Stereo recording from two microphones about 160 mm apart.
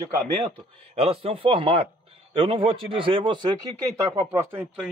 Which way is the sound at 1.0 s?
35° right (ahead or behind).